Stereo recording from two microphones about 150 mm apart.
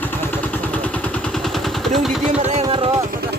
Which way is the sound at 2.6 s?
35° right (ahead or behind).